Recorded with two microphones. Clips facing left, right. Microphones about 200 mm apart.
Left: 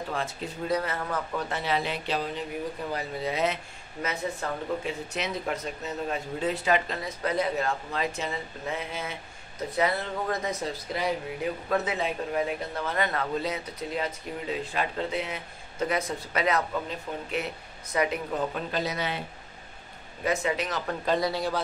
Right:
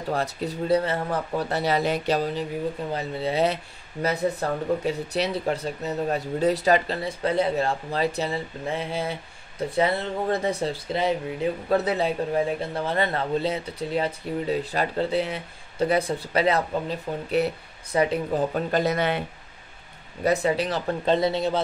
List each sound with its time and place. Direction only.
0.1 s speech: 40° right (ahead or behind)
2.9 s speech: 30° right (ahead or behind); by 19.2 s 55° right (ahead or behind)
20.2 s speech: 35° right (ahead or behind)